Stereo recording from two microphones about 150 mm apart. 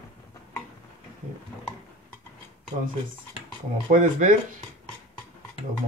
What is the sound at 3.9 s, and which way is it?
Speech, 55° right (ahead or behind).